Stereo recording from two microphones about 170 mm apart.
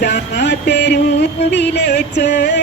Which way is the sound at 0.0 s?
80° left.